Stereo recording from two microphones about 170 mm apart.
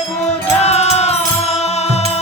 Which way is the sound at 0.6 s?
40° left (ahead or behind).